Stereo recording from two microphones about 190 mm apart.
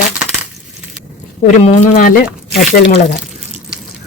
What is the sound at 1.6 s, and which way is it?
Speech, 40° left (ahead or behind).